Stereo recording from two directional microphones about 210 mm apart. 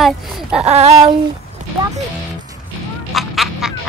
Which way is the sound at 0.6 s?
30° right (ahead or behind).